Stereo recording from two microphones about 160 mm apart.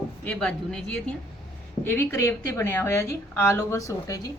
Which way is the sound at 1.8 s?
15° left (ahead or behind).